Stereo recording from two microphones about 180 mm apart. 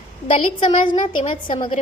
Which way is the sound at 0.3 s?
30° left (ahead or behind).